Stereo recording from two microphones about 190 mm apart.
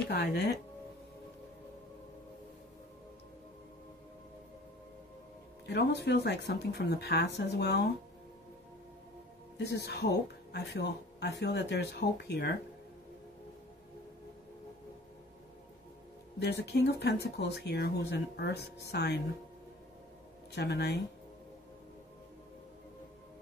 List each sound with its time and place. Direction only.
0.1 s speech: 55° left (ahead or behind)
5.7 s speech: 60° left (ahead or behind)
9.6 s speech: 60° left (ahead or behind)
16.3 s speech: 60° left (ahead or behind)
20.5 s speech: 65° left (ahead or behind)